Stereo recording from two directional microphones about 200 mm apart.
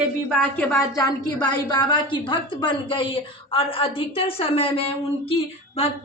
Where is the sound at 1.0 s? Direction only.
20° left (ahead or behind).